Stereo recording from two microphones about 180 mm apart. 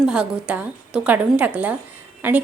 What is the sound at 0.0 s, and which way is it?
A woman's voice, 5° right (ahead or behind).